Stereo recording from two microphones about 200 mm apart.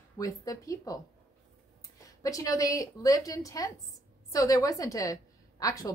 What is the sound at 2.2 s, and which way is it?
Speech, 15° left (ahead or behind).